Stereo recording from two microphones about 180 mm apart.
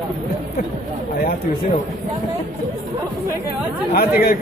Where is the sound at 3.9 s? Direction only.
60° left (ahead or behind).